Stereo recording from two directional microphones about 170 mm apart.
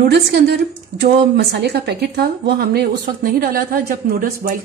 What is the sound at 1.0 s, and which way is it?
A woman's voice, 75° right (ahead or behind).